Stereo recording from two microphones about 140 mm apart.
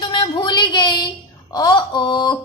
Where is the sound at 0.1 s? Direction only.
35° left (ahead or behind).